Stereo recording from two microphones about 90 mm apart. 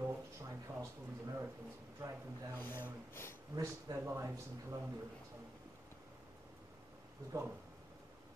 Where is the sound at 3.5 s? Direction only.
35° right (ahead or behind).